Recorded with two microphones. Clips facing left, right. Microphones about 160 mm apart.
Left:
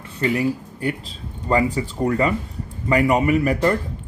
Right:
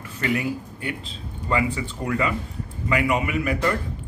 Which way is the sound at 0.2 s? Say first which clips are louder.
Left 4 dB; 35° left (ahead or behind).